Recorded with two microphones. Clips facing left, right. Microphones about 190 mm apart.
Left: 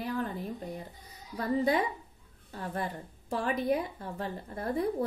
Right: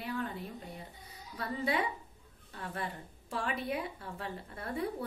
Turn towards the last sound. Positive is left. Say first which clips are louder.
# left 6 dB
turn(degrees=35)  # may be behind; listen again after turning